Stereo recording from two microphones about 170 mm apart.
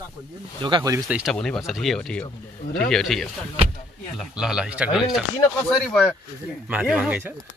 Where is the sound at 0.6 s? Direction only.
25° right (ahead or behind).